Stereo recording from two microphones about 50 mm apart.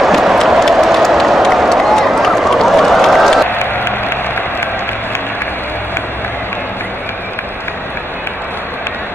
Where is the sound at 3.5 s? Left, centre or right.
Left.